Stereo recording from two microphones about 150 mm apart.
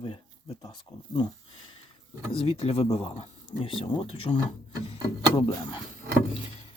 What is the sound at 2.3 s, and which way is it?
Speech, 40° left (ahead or behind).